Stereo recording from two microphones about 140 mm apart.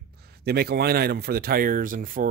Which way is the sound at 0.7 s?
90° right.